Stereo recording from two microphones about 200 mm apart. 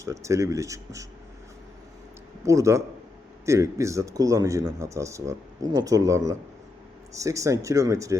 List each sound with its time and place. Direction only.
0.0 s speech: 15° right (ahead or behind)
2.4 s speech: 15° right (ahead or behind)